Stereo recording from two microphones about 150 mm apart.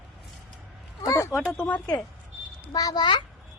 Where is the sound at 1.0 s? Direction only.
20° left (ahead or behind).